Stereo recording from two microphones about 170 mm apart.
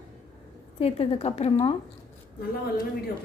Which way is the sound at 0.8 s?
35° left (ahead or behind).